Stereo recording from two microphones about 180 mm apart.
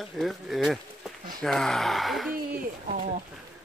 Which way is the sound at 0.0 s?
Centre (ahead or behind).